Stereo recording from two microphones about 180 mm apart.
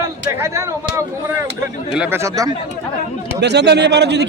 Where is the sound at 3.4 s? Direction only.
70° right (ahead or behind).